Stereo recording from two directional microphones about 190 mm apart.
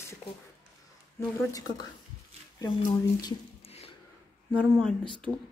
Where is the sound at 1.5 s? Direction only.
20° left (ahead or behind).